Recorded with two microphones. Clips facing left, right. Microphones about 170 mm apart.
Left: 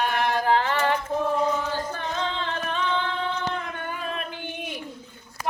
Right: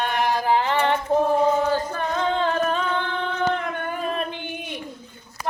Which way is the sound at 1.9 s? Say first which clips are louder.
Right 6 dB; 50° right (ahead or behind).